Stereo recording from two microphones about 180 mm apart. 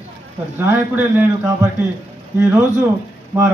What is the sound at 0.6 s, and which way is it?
A man's voice, 10° right (ahead or behind).